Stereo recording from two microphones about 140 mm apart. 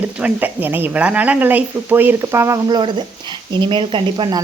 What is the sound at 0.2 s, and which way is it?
Speech, 10° right (ahead or behind).